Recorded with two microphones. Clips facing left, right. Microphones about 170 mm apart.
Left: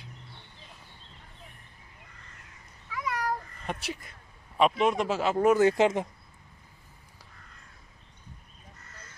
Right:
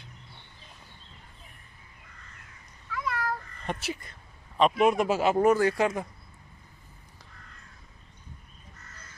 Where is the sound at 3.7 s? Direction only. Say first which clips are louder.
Right 2 dB; centre (ahead or behind).